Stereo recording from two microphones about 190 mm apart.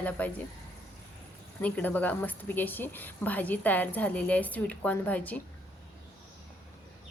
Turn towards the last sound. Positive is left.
turn(degrees=10)  # may be behind; listen again after turning